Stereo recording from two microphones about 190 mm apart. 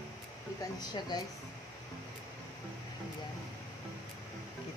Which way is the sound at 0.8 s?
20° left (ahead or behind).